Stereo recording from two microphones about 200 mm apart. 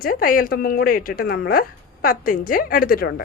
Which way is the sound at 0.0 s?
45° left (ahead or behind).